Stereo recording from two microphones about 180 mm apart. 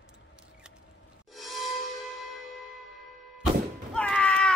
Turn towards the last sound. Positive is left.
turn(degrees=5)  # may be behind; listen again after turning